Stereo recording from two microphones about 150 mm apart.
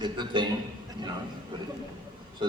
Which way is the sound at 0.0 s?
30° right (ahead or behind).